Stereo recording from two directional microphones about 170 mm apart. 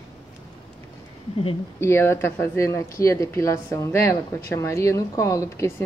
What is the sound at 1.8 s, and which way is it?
Speech, 15° left (ahead or behind).